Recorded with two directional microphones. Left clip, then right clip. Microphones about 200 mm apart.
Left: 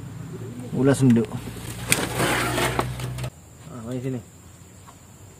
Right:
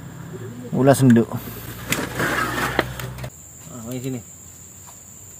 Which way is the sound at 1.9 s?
55° left (ahead or behind).